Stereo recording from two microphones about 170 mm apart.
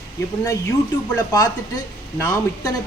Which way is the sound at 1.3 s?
20° left (ahead or behind).